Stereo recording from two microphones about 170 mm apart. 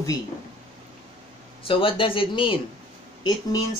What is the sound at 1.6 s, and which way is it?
Speech, 30° left (ahead or behind).